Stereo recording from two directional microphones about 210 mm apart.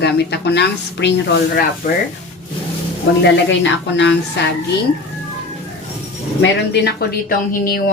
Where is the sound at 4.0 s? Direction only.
60° left (ahead or behind).